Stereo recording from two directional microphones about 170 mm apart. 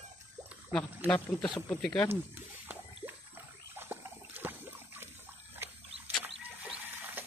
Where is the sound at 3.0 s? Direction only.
35° right (ahead or behind).